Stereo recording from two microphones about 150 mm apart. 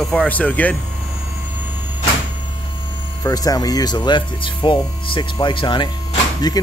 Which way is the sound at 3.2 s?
25° left (ahead or behind).